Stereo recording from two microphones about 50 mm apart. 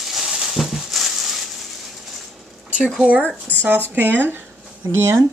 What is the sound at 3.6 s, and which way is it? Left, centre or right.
Speech, right.